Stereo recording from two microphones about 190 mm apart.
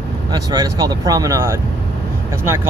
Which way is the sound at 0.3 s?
20° right (ahead or behind).